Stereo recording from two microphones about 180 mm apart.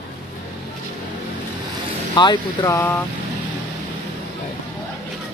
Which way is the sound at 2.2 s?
20° left (ahead or behind).